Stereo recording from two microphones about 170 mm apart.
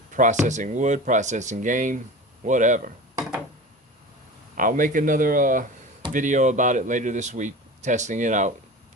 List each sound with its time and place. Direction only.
0.1 s speech: 50° right (ahead or behind)
4.5 s speech: 50° right (ahead or behind)